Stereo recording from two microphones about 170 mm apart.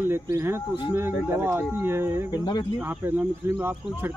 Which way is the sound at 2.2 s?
25° left (ahead or behind).